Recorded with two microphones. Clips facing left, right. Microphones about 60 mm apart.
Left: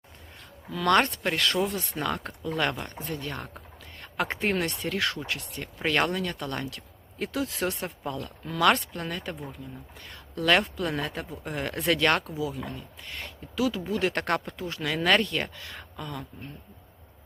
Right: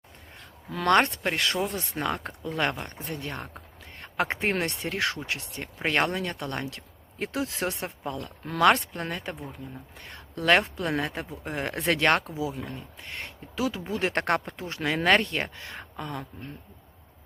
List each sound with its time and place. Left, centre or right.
0.9 s speech: right
13.0 s speech: right